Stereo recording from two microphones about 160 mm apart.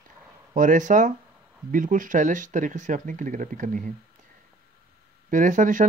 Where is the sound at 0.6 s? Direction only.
55° right (ahead or behind).